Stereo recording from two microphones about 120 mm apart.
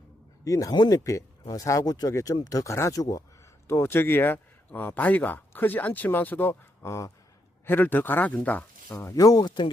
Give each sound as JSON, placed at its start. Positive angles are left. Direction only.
{"t": 0.4, "sound": "speech", "side_deg": 30}
{"t": 8.9, "sound": "speech", "side_deg": 25}